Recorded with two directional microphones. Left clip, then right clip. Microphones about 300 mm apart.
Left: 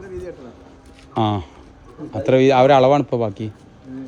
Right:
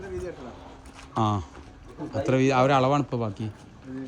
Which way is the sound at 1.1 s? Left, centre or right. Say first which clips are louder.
Left 6 dB; left.